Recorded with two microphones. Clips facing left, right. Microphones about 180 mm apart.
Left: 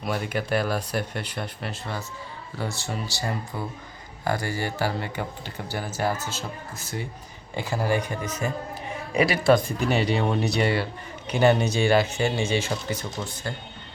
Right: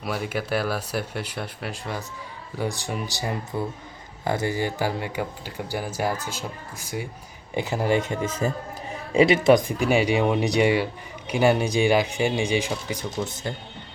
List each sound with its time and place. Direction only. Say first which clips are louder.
0.0 s speech: even; 5° right (ahead or behind); by 13.5 s 20° right (ahead or behind)